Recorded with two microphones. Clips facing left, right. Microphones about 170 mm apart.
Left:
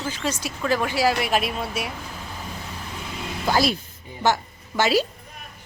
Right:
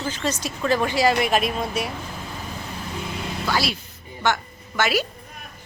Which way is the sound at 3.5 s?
45° left (ahead or behind).